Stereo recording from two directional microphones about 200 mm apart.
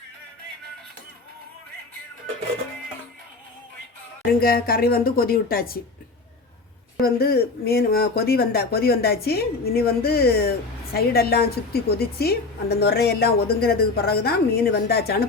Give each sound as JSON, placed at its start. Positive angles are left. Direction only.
{"t": 4.3, "sound": "a woman's voice", "side_deg": 50}
{"t": 7.0, "sound": "a woman's voice", "side_deg": 50}